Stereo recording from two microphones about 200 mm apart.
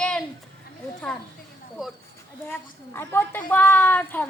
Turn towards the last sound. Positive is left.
turn(degrees=10)  # may be behind; listen again after turning